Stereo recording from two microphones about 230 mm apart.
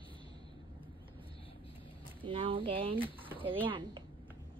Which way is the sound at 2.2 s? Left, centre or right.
Right.